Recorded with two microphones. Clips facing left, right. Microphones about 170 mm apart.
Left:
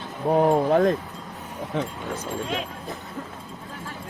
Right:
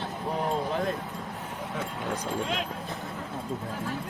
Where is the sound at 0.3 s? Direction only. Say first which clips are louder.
Left 11 dB; 50° left (ahead or behind).